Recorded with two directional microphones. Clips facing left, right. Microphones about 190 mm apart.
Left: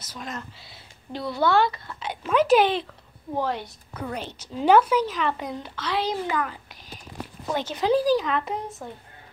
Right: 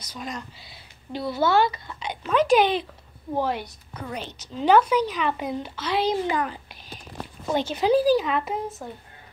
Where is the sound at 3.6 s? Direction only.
5° left (ahead or behind).